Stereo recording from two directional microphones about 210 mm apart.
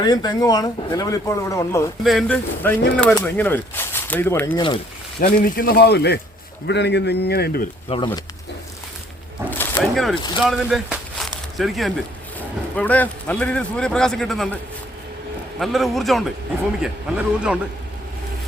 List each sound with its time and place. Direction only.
0.0 s speech: 20° left (ahead or behind)
2.0 s speech: centre (ahead or behind)
4.5 s speech: 20° left (ahead or behind)
5.2 s a man's voice: 45° left (ahead or behind)
7.9 s speech: 25° left (ahead or behind)
9.5 s a sound: 10° left (ahead or behind)
10.4 s a man's voice: centre (ahead or behind)